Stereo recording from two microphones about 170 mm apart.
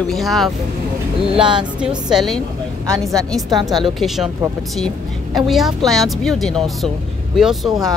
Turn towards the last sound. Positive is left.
turn(degrees=0)  # may be behind; listen again after turning